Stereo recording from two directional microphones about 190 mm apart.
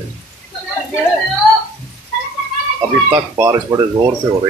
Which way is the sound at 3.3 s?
15° right (ahead or behind).